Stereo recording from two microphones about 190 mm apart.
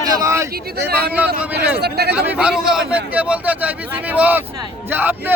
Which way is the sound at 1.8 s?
60° right (ahead or behind).